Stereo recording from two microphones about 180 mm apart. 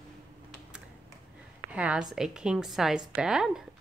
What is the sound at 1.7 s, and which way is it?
A woman's voice, 5° right (ahead or behind).